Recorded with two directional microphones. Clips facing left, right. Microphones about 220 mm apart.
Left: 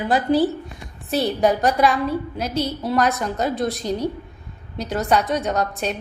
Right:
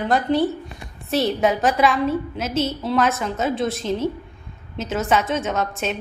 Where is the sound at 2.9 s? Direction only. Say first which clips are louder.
Left 2 dB; centre (ahead or behind).